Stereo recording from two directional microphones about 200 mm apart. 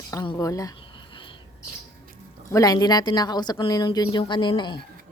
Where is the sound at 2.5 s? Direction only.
20° left (ahead or behind).